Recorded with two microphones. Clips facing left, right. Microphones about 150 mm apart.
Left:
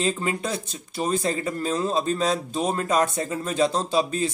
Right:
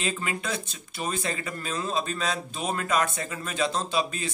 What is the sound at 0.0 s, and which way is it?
Speech, 35° left (ahead or behind).